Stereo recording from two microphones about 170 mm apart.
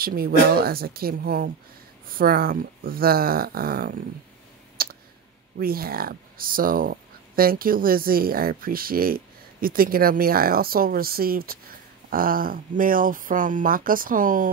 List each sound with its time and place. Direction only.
0.0 s speech: 60° right (ahead or behind)
4.8 s clicking: 60° right (ahead or behind)
5.6 s speech: 60° right (ahead or behind)